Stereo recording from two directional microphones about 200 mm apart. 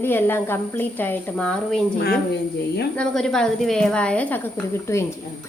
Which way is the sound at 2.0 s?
55° left (ahead or behind).